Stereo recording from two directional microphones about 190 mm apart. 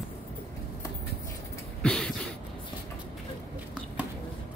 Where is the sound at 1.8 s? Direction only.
5° left (ahead or behind).